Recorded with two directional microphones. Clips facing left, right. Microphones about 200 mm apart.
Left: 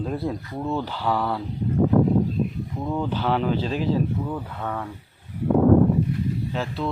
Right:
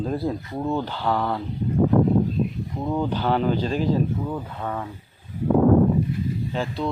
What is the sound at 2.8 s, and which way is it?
Speech, 10° right (ahead or behind).